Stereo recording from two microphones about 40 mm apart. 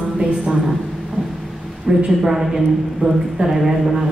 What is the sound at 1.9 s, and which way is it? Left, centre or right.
Speech, centre.